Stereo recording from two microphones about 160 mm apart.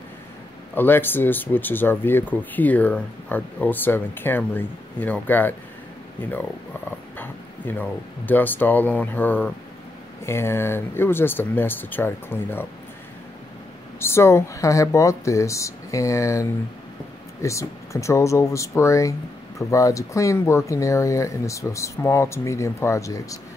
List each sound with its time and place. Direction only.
0.7 s speech: 15° left (ahead or behind)
7.2 s speech: 10° left (ahead or behind)
13.9 s speech: 15° left (ahead or behind)